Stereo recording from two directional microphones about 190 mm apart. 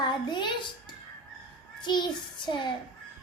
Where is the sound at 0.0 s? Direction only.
25° left (ahead or behind).